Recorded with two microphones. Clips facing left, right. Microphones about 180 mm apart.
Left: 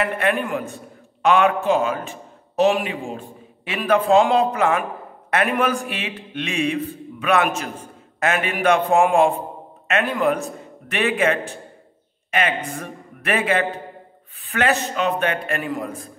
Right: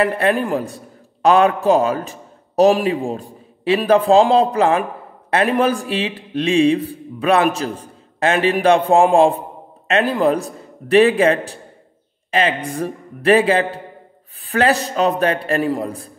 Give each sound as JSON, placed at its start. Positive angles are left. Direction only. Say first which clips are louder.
{"t": 0.0, "sound": "a man's voice", "louder": "right 4 dB", "side_deg": -35}